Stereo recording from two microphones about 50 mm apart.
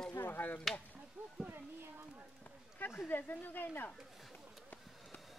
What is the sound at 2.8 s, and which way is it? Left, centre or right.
Speech, left.